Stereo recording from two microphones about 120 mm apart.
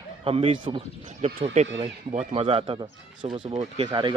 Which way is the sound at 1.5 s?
65° right (ahead or behind).